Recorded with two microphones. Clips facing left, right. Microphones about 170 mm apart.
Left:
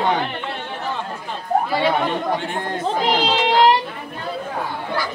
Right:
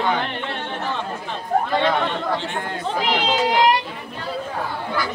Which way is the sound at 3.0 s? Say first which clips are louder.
Even; 30° left (ahead or behind).